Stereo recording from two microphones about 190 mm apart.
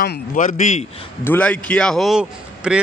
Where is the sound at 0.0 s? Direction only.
50° left (ahead or behind).